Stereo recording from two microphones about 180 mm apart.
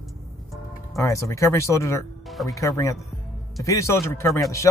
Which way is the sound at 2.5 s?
15° left (ahead or behind).